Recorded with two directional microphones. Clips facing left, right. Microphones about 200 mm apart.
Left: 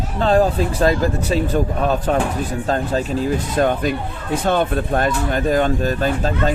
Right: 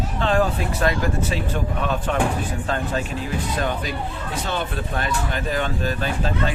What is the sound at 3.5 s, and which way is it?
Speech, 50° left (ahead or behind).